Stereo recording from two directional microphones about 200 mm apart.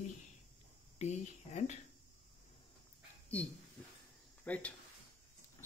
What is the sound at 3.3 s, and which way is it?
Speech, 5° left (ahead or behind).